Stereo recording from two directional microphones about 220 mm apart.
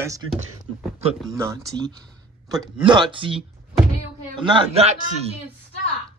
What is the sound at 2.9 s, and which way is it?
A man's voice, 20° right (ahead or behind).